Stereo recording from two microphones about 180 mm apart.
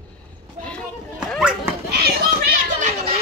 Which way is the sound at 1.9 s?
60° right (ahead or behind).